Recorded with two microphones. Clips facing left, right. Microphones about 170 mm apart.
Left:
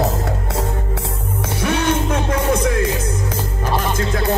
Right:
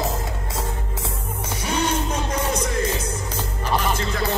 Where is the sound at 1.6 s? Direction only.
60° left (ahead or behind).